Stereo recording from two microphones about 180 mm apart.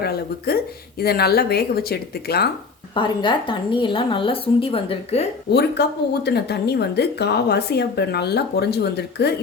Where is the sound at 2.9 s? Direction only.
25° left (ahead or behind).